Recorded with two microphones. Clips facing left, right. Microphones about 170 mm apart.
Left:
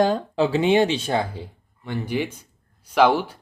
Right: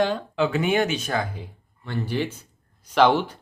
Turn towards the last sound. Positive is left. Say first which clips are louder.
# left 1 dB
turn(degrees=10)  # may be behind; listen again after turning